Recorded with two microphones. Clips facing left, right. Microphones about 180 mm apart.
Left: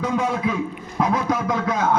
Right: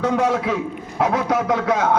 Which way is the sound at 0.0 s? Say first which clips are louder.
Right 3 dB; 70° right (ahead or behind).